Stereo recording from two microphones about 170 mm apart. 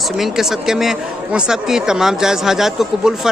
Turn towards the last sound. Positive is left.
turn(degrees=0)  # may be behind; listen again after turning